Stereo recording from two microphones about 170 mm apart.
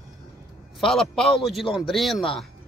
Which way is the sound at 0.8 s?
5° left (ahead or behind).